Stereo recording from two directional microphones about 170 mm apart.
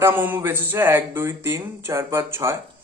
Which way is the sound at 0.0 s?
15° right (ahead or behind).